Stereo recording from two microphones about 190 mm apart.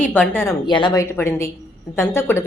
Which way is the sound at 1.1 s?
10° left (ahead or behind).